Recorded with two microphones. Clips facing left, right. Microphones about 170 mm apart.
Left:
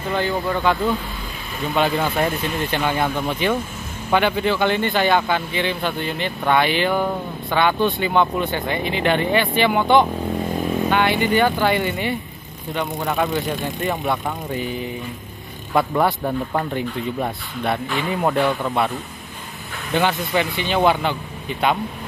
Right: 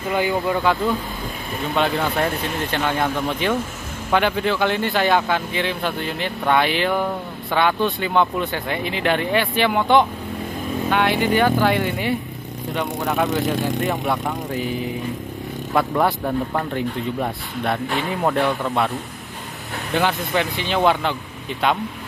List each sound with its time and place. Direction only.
0.1 s speech: 15° right (ahead or behind)
0.6 s speech: centre (ahead or behind)
19.9 s speech: centre (ahead or behind)